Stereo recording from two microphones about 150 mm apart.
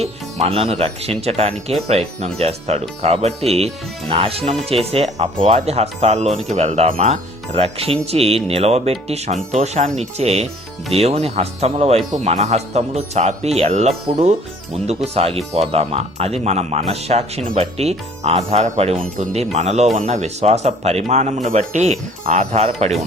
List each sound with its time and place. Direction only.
0.0 s speech: 40° right (ahead or behind)